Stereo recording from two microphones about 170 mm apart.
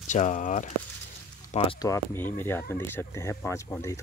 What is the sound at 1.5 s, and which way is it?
Speech, 35° left (ahead or behind).